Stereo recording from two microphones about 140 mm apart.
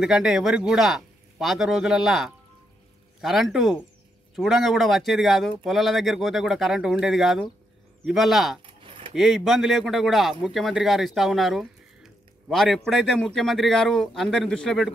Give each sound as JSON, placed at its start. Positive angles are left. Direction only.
{"t": 0.0, "sound": "a man's voice", "side_deg": -5}
{"t": 8.8, "sound": "keys jangling", "side_deg": -40}
{"t": 9.1, "sound": "a man's voice", "side_deg": 0}